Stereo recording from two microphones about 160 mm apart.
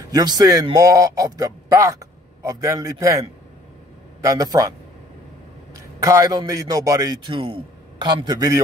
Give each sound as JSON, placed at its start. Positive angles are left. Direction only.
{"t": 0.1, "sound": "a man's voice", "side_deg": -25}
{"t": 4.2, "sound": "a man's voice", "side_deg": -20}
{"t": 5.8, "sound": "a man's voice", "side_deg": -20}